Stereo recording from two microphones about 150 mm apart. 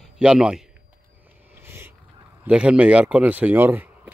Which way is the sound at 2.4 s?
5° right (ahead or behind).